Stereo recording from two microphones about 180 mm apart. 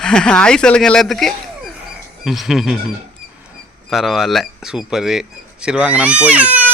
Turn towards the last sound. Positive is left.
turn(degrees=-10)  # may be behind; listen again after turning